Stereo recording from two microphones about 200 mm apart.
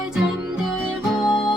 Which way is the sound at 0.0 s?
5° right (ahead or behind).